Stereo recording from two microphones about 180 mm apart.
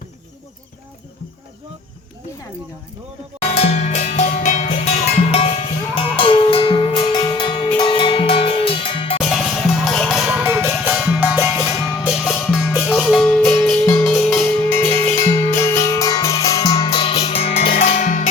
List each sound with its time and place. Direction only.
3.4 s music: 35° left (ahead or behind)
9.8 s music: centre (ahead or behind); by 17.7 s 35° left (ahead or behind)
17.7 s music: 45° left (ahead or behind)